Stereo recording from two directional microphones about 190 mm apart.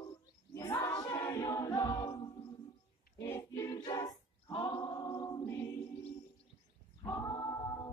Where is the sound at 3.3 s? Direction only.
15° left (ahead or behind).